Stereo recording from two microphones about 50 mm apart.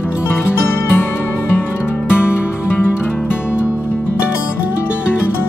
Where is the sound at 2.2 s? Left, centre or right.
Left.